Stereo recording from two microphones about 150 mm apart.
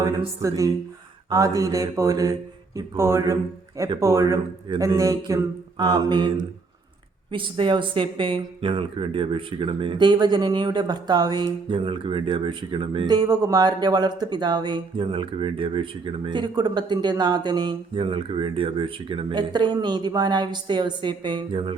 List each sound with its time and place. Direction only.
0.4 s mantra: 20° right (ahead or behind)
7.3 s speech: 35° right (ahead or behind)